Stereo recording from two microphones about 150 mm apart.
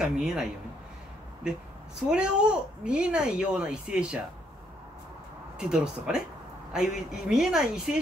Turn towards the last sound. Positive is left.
turn(degrees=-5)  # may be behind; listen again after turning